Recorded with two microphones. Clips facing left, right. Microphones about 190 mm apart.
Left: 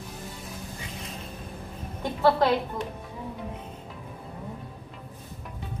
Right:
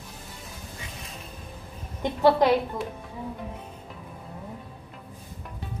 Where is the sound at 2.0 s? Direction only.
15° right (ahead or behind).